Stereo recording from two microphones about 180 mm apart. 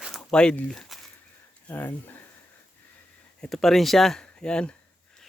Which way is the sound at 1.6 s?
10° left (ahead or behind).